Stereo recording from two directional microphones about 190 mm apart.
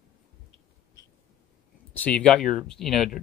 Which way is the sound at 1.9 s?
5° left (ahead or behind).